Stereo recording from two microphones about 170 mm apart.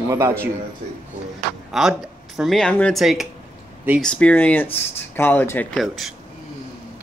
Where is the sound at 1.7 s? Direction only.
Centre (ahead or behind).